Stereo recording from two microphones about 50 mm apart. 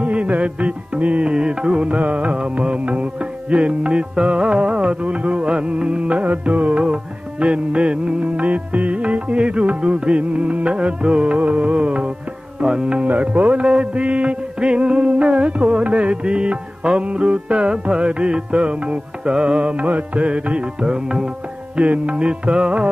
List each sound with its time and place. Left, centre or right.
0.0 s music: right
12.5 s tabla: centre
13.0 s music: right; by 21.3 s centre
21.7 s music: right